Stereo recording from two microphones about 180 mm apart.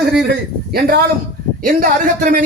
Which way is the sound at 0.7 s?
55° right (ahead or behind).